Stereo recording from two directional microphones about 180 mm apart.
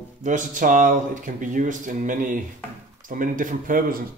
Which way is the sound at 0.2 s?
45° right (ahead or behind).